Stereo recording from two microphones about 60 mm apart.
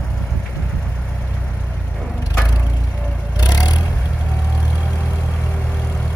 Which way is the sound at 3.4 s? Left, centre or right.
Left.